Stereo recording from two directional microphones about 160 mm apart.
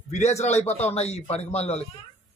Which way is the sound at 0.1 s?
45° left (ahead or behind).